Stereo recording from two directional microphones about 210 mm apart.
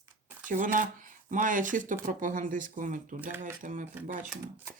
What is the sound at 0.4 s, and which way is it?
Speech, 40° right (ahead or behind).